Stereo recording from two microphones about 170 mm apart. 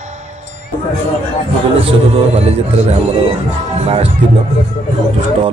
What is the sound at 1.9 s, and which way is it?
Speech, 35° right (ahead or behind).